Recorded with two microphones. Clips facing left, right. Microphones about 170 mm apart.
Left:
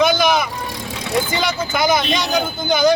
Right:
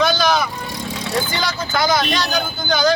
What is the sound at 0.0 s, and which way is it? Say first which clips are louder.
Vehicle: left 2 dB; 20° left (ahead or behind).